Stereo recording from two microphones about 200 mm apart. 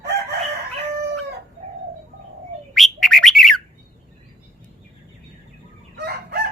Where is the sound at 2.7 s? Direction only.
Centre (ahead or behind).